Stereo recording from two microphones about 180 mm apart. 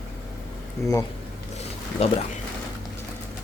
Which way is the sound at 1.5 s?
35° left (ahead or behind).